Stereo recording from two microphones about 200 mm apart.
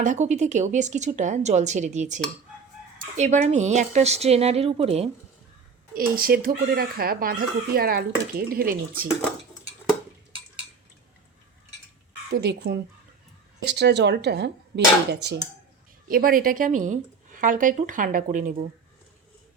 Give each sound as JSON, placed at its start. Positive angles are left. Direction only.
{"t": 0.0, "sound": "speech", "side_deg": -35}
{"t": 5.9, "sound": "speech", "side_deg": -45}
{"t": 12.3, "sound": "speech", "side_deg": -55}
{"t": 16.0, "sound": "speech", "side_deg": -45}